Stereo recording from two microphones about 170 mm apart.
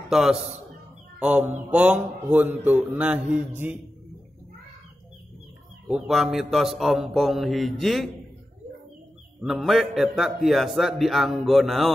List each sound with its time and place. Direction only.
0.1 s a man's voice: centre (ahead or behind)
5.9 s a man's voice: 5° right (ahead or behind)
9.4 s a man's voice: centre (ahead or behind)